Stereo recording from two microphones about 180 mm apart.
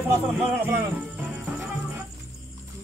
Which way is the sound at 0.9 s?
10° right (ahead or behind).